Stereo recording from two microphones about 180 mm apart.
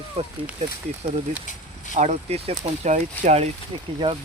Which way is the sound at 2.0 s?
35° right (ahead or behind).